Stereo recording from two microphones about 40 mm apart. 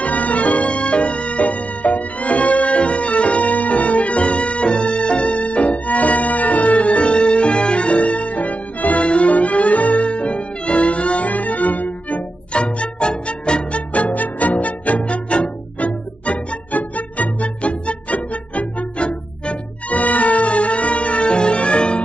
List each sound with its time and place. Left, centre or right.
0.0 s music: left
12.5 s music: left